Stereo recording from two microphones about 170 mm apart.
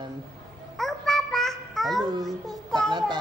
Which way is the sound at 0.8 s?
Centre (ahead or behind).